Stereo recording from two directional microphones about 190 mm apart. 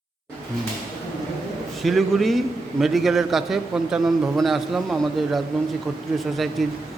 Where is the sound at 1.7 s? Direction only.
Centre (ahead or behind).